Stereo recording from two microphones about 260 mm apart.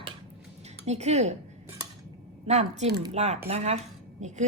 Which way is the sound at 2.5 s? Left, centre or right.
Right.